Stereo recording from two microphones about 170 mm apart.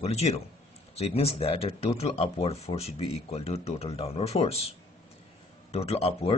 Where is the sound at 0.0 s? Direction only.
40° left (ahead or behind).